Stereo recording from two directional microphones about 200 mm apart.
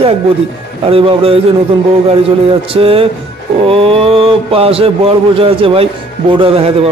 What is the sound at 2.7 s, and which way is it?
A man's voice, 30° right (ahead or behind).